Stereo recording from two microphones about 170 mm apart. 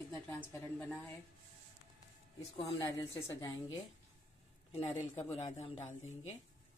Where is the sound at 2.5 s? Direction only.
35° left (ahead or behind).